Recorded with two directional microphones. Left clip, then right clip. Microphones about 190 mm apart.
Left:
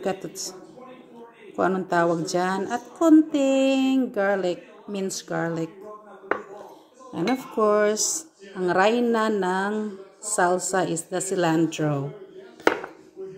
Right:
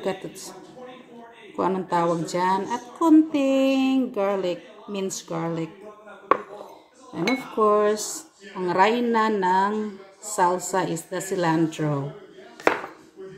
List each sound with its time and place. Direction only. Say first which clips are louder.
0.0 s a woman's voice: left 1 dB; 20° left (ahead or behind)
1.6 s a woman's voice: left 1 dB; 20° left (ahead or behind)
7.5 s a woman's voice: right 1 dB; 20° left (ahead or behind)